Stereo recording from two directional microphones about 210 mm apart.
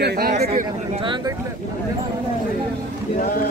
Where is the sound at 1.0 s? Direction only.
20° right (ahead or behind).